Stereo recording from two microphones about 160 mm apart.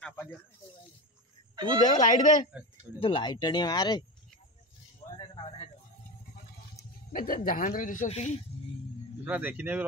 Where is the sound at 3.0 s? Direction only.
35° left (ahead or behind).